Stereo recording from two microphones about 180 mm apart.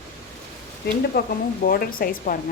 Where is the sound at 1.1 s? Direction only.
60° left (ahead or behind).